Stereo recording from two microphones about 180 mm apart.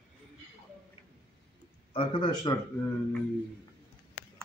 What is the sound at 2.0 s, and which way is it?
Speech, 25° left (ahead or behind).